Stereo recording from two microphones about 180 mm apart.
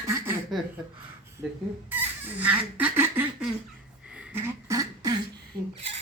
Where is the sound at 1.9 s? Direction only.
10° right (ahead or behind).